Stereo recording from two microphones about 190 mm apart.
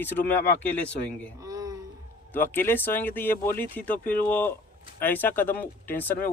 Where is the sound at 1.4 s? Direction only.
20° right (ahead or behind).